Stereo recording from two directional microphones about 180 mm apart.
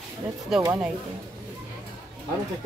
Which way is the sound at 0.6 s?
20° right (ahead or behind).